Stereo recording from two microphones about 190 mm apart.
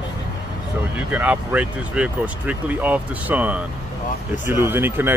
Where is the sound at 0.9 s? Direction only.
10° right (ahead or behind).